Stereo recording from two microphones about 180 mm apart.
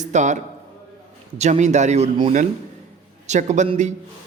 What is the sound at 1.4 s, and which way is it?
A man's voice, 40° right (ahead or behind).